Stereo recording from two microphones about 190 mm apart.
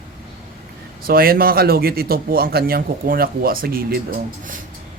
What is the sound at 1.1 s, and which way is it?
Speech, 50° right (ahead or behind).